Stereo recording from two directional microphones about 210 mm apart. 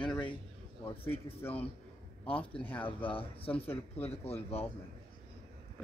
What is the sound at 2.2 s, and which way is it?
Speech, 25° left (ahead or behind).